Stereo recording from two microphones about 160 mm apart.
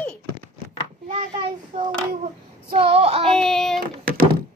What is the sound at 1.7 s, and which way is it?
Child singing, 45° right (ahead or behind).